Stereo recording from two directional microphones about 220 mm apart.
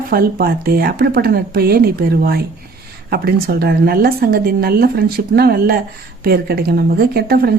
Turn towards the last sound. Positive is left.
turn(degrees=-45)  # may be behind; listen again after turning